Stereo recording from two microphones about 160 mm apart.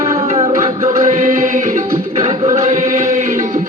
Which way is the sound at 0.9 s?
55° right (ahead or behind).